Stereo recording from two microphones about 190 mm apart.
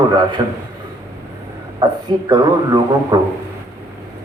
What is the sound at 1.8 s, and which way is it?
A man's voice, 20° right (ahead or behind).